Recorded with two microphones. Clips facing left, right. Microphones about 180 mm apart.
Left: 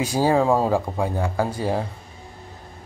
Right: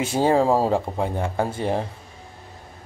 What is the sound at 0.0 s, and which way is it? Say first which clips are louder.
Speech: even; 25° right (ahead or behind).